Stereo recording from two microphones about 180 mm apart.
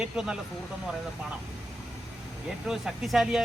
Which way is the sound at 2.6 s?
Centre (ahead or behind).